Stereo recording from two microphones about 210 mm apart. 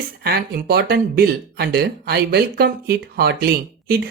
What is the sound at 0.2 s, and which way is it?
Speech, 45° right (ahead or behind).